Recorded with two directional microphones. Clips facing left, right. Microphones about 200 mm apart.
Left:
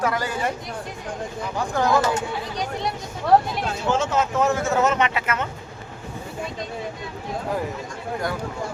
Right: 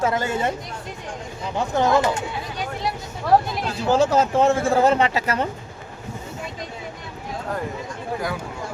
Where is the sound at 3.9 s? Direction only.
35° right (ahead or behind).